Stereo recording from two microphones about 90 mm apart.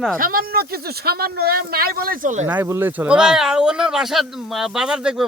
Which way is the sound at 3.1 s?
10° right (ahead or behind).